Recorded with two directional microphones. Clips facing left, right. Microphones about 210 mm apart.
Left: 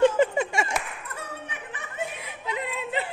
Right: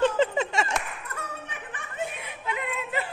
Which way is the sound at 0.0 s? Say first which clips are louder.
Left 3 dB; 10° left (ahead or behind).